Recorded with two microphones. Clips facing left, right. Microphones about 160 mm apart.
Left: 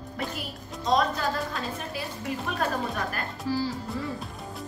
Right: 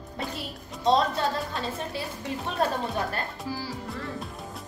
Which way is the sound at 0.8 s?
30° right (ahead or behind).